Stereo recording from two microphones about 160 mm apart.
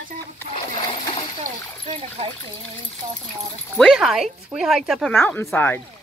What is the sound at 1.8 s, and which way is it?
Speech, 40° right (ahead or behind).